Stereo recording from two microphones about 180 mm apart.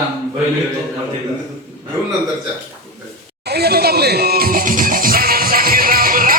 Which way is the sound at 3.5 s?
60° right (ahead or behind).